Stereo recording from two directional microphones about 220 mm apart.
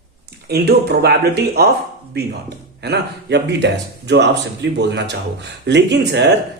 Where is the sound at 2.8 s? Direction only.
50° right (ahead or behind).